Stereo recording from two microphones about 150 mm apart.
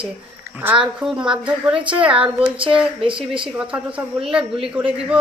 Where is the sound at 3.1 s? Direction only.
35° right (ahead or behind).